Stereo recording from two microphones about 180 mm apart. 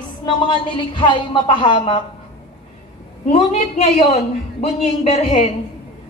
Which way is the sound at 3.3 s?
35° left (ahead or behind).